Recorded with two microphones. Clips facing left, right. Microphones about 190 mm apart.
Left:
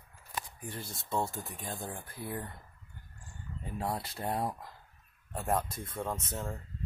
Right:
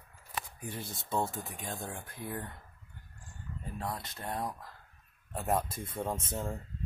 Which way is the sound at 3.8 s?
30° left (ahead or behind).